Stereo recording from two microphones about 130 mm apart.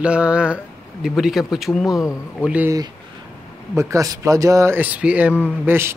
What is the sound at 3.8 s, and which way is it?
Speech, 25° right (ahead or behind).